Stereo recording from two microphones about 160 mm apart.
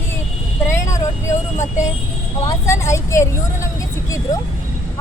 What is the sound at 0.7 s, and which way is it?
Vehicle, 20° left (ahead or behind).